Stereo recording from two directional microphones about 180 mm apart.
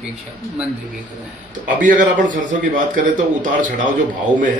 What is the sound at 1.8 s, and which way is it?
A man's voice, 45° right (ahead or behind).